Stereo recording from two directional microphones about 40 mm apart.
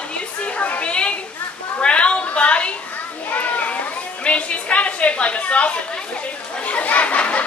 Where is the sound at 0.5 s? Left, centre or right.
Left.